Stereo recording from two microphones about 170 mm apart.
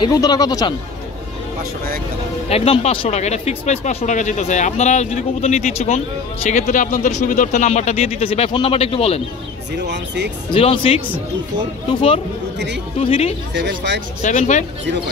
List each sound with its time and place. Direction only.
0.0 s speech: 20° left (ahead or behind)
2.5 s speech: 35° left (ahead or behind)
9.8 s speech: 90° right
10.5 s speech: 30° left (ahead or behind)
13.0 s speech: 30° left (ahead or behind)
13.6 s speech: 90° right
14.2 s speech: 45° left (ahead or behind)